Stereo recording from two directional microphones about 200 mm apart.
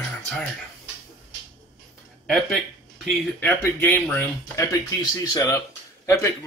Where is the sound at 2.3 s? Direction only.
Centre (ahead or behind).